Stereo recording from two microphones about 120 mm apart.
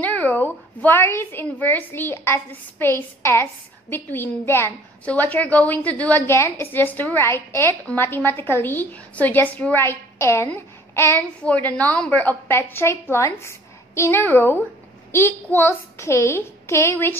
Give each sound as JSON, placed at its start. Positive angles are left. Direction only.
{"t": 0.0, "sound": "a woman's voice", "side_deg": 15}
{"t": 3.9, "sound": "a woman's voice", "side_deg": 15}